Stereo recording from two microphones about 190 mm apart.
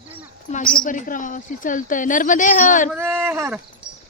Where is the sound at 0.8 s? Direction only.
45° left (ahead or behind).